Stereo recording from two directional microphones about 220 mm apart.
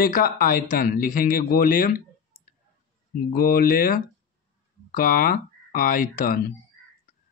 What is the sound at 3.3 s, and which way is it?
Speech, 40° left (ahead or behind).